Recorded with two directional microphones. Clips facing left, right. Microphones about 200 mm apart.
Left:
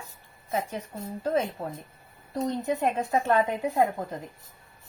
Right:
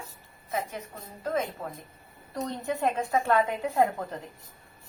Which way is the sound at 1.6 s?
45° left (ahead or behind).